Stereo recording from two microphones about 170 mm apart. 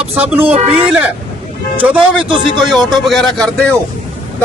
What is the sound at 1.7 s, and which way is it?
Speech, 10° right (ahead or behind).